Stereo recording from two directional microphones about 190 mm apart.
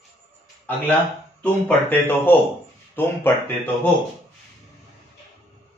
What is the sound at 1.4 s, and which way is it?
Speech, 10° left (ahead or behind).